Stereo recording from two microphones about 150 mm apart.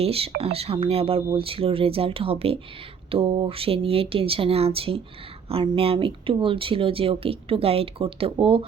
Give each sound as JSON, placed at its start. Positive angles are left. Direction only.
{"t": 0.0, "sound": "speech", "side_deg": -40}